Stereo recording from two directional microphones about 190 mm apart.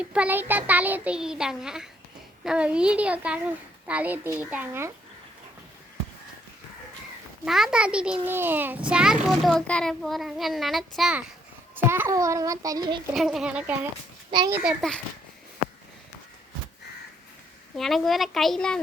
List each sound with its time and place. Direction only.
0.0 s child singing: 5° right (ahead or behind)
2.4 s a child's voice: 5° right (ahead or behind)
3.8 s child singing: 10° right (ahead or behind)
7.4 s a child's voice: centre (ahead or behind)
11.7 s child singing: 10° right (ahead or behind)
13.1 s a child's voice: centre (ahead or behind)
14.3 s a child's voice: 25° right (ahead or behind)
14.5 s a child's voice: 5° right (ahead or behind)
17.7 s a child's voice: centre (ahead or behind)